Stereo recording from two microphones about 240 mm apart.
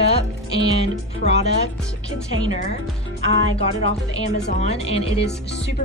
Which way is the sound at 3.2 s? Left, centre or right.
Right.